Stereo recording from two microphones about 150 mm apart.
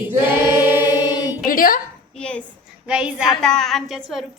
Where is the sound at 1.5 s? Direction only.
70° left (ahead or behind).